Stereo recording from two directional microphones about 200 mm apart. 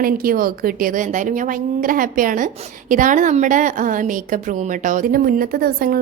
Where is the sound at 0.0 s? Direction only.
45° right (ahead or behind).